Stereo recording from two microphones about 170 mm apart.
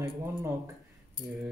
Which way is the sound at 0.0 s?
15° right (ahead or behind).